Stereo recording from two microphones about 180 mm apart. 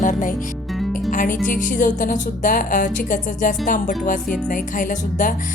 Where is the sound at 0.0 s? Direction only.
45° left (ahead or behind).